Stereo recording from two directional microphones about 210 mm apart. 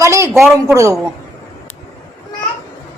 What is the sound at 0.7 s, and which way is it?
Speech, 15° right (ahead or behind).